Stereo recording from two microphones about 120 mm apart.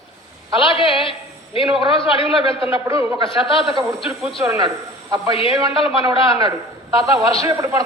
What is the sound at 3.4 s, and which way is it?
Speech, 50° left (ahead or behind).